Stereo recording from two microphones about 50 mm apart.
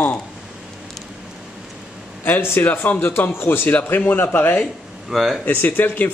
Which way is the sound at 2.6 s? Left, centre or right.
Left.